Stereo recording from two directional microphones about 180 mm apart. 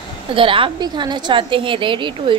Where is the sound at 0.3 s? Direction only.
30° right (ahead or behind).